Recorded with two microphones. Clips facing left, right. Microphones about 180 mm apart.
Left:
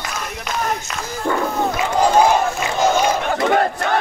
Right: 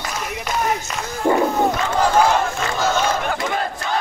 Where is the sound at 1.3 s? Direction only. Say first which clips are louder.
Right 4 dB; 35° right (ahead or behind).